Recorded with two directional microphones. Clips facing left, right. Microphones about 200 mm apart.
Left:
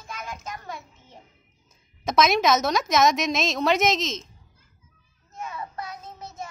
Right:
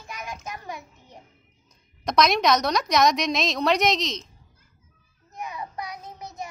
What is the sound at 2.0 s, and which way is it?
A woman's voice, centre (ahead or behind).